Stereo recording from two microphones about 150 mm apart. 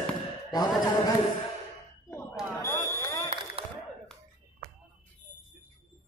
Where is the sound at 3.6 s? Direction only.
40° right (ahead or behind).